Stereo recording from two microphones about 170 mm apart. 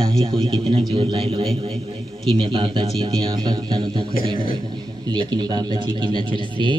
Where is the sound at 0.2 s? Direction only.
30° right (ahead or behind).